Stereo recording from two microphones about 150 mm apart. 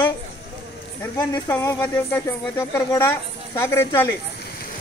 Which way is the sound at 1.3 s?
15° left (ahead or behind).